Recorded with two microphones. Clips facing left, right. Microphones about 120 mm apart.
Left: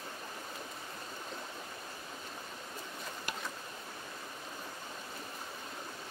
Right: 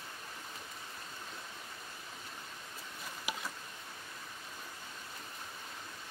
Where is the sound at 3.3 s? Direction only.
5° right (ahead or behind).